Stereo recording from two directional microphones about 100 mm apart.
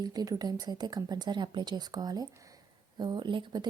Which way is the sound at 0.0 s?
40° right (ahead or behind).